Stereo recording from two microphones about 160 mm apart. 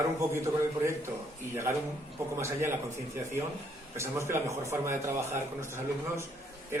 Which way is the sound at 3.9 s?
15° right (ahead or behind).